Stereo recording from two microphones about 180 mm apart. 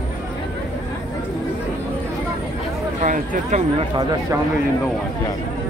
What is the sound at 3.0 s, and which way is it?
Speech, 40° right (ahead or behind).